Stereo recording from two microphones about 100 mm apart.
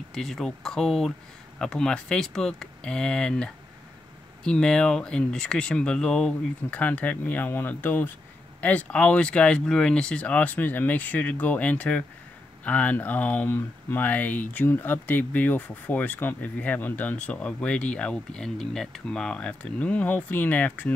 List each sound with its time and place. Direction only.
0.1 s speech: 5° left (ahead or behind)